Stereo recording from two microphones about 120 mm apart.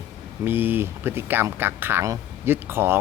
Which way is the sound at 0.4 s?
15° right (ahead or behind).